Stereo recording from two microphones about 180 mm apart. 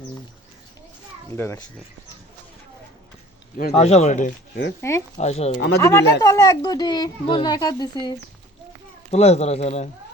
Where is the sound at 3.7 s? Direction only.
35° left (ahead or behind).